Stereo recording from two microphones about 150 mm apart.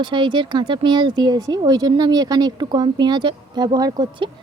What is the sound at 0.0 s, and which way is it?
Speech, 30° right (ahead or behind).